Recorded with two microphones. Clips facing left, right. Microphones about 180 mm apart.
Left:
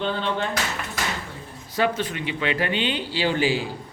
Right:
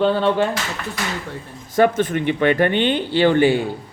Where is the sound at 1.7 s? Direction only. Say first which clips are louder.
Right 8 dB; 50° right (ahead or behind).